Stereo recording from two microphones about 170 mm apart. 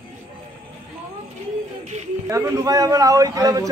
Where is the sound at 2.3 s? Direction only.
20° right (ahead or behind).